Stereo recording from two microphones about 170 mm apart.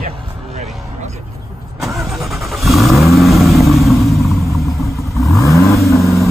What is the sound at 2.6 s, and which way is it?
Vehicle, centre (ahead or behind).